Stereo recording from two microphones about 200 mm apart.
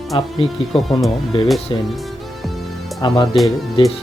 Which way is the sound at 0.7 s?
Centre (ahead or behind).